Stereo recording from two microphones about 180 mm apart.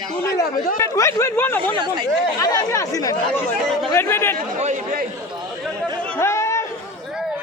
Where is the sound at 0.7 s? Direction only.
15° left (ahead or behind).